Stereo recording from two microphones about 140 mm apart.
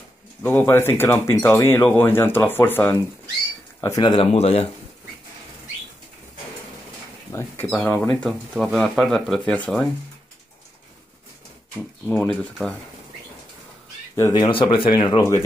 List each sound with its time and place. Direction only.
0.4 s speech: 15° left (ahead or behind)
4.1 s speech: 45° left (ahead or behind)
7.3 s speech: 15° left (ahead or behind)
12.3 s speech: centre (ahead or behind)
14.3 s speech: 35° left (ahead or behind)